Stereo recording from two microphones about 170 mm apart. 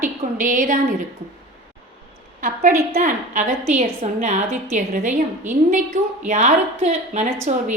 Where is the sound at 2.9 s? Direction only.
45° right (ahead or behind).